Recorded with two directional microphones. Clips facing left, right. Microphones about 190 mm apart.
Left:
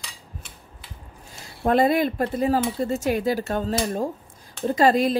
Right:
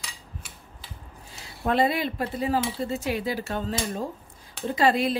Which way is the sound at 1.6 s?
45° left (ahead or behind).